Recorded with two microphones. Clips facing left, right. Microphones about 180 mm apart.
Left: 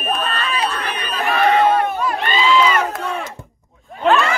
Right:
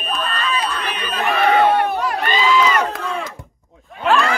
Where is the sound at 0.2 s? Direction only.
30° left (ahead or behind).